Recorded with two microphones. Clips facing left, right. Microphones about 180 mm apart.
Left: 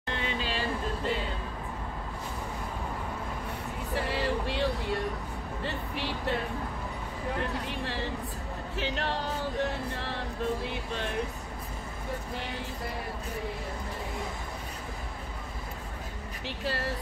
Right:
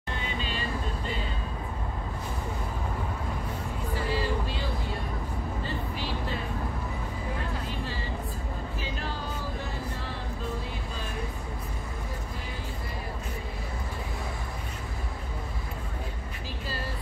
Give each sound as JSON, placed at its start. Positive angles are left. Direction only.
{"t": 0.1, "sound": "vehicle", "side_deg": 80}
{"t": 3.9, "sound": "vehicle", "side_deg": 70}
{"t": 5.6, "sound": "music", "side_deg": 70}
{"t": 7.6, "sound": "music", "side_deg": 70}
{"t": 10.1, "sound": "a sound", "side_deg": 75}
{"t": 16.4, "sound": "vehicle", "side_deg": 75}